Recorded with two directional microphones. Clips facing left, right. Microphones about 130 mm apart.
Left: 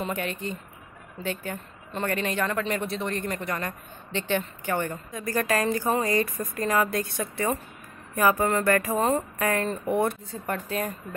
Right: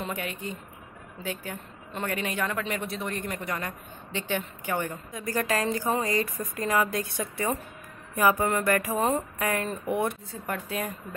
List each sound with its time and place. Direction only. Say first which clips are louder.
0.0 s a woman's voice: left 3 dB; 5° right (ahead or behind)